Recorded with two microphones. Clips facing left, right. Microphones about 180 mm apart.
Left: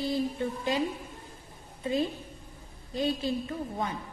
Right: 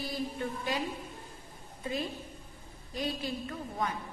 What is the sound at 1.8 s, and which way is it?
A woman's voice, 25° left (ahead or behind).